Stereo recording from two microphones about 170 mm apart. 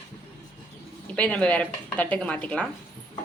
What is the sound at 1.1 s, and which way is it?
A woman's voice, 10° left (ahead or behind).